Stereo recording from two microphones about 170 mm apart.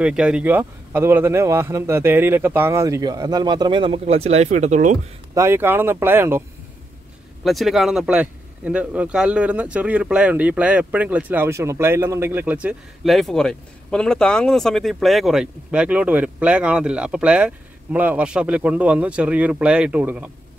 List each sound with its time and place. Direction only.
0.0 s speech: 5° right (ahead or behind); by 4.9 s 45° right (ahead or behind)
5.3 s speech: 15° right (ahead or behind)
7.4 s speech: centre (ahead or behind)